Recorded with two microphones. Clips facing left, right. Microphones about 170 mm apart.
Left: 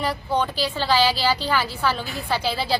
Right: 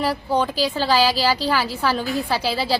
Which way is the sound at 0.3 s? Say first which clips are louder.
Right 3 dB; 35° right (ahead or behind).